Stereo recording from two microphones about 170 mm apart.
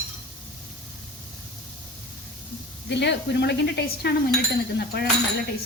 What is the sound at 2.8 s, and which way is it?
A woman's voice, 90° left.